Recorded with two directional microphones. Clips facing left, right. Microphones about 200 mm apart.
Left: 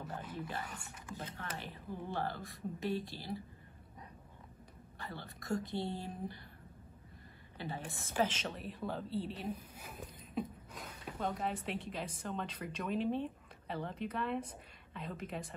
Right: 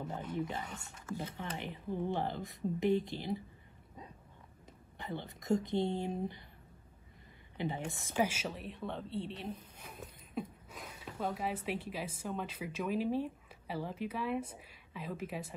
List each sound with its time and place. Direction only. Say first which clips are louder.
0.7 s speech: right 3 dB; 10° left (ahead or behind)
1.6 s speech: right 6 dB; 20° right (ahead or behind)
4.9 s speech: right 5 dB; 20° right (ahead or behind)
7.5 s speech: right 5 dB; 20° right (ahead or behind)
8.2 s speech: right 1 dB; 10° right (ahead or behind)